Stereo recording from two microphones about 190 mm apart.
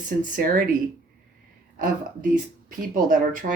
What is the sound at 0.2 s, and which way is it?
Speech, 45° right (ahead or behind).